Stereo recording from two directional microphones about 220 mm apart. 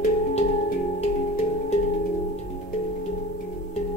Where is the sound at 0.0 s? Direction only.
30° left (ahead or behind).